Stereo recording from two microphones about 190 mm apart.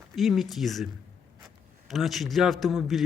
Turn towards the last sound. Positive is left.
turn(degrees=0)  # may be behind; listen again after turning